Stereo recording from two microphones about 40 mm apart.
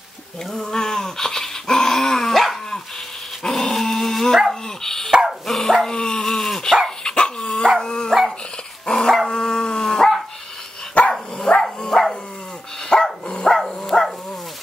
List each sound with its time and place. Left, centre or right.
0.5 s dog: centre
5.9 s dog: centre
7.0 s dog: centre
8.1 s dog: centre
8.8 s dog: centre
11.0 s dog: left
11.3 s dog: left
11.8 s dog: centre
13.6 s dog: centre